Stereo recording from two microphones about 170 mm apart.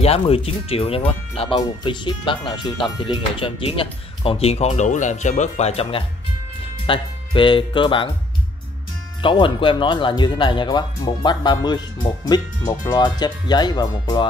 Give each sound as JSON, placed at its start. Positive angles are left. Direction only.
{"t": 0.0, "sound": "speech", "side_deg": 35}
{"t": 9.2, "sound": "speech", "side_deg": 30}